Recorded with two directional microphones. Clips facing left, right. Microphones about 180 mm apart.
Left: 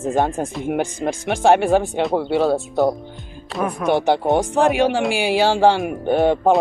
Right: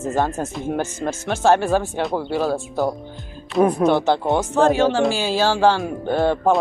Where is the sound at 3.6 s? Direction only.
30° right (ahead or behind).